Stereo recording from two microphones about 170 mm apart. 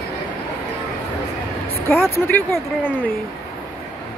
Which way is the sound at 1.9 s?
15° left (ahead or behind).